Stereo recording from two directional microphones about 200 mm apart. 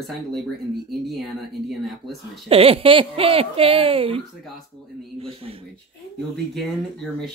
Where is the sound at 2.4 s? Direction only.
30° right (ahead or behind).